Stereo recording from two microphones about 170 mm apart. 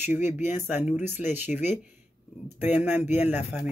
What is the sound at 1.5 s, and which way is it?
Speech, 45° left (ahead or behind).